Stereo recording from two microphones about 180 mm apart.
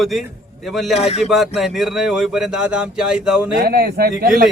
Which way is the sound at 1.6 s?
Centre (ahead or behind).